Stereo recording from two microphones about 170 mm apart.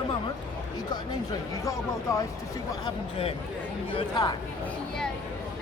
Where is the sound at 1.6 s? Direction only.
20° left (ahead or behind).